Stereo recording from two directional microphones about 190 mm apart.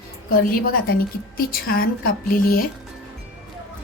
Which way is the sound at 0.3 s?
50° left (ahead or behind).